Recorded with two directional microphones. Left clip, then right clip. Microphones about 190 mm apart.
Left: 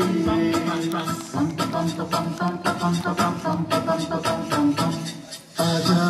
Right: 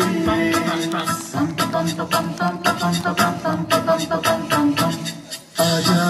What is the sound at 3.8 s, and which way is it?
Music, 20° right (ahead or behind).